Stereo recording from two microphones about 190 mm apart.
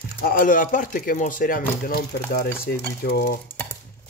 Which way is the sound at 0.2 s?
50° left (ahead or behind).